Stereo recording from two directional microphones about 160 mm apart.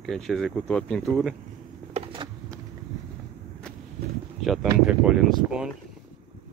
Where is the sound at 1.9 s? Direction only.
35° right (ahead or behind).